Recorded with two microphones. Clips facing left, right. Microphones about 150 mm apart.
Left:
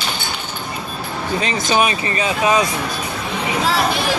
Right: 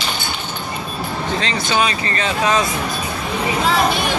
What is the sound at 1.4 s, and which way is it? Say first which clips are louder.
Speech: left 3 dB; 20° left (ahead or behind).